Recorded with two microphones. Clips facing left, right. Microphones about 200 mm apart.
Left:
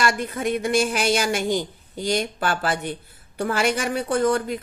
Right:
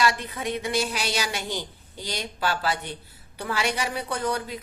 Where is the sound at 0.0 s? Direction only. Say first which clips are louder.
Left 3 dB; 50° left (ahead or behind).